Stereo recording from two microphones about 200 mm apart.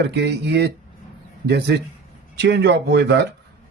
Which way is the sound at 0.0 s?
55° right (ahead or behind).